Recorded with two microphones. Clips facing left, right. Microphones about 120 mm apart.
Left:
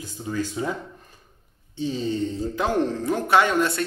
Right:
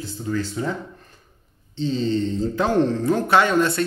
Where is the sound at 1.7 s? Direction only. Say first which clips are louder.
Right 4 dB; 10° left (ahead or behind).